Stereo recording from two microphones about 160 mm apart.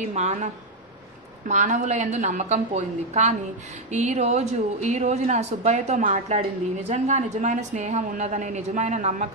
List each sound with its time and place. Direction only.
0.0 s speech: 45° right (ahead or behind)
1.5 s speech: 50° right (ahead or behind)